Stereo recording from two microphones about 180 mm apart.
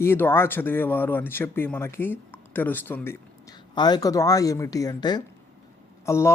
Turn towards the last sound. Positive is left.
turn(degrees=15)  # may be behind; listen again after turning